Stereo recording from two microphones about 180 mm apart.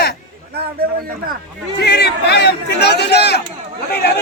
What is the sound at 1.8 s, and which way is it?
Speech, 65° left (ahead or behind).